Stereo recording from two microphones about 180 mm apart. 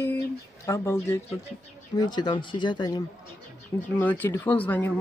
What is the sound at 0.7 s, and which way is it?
Speech, 15° left (ahead or behind).